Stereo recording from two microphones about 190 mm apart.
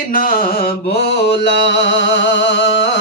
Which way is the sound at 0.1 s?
50° left (ahead or behind).